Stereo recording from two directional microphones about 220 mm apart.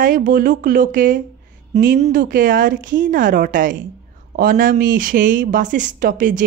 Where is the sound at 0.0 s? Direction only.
40° right (ahead or behind).